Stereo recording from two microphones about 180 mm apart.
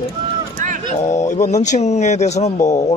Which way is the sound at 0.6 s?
45° right (ahead or behind).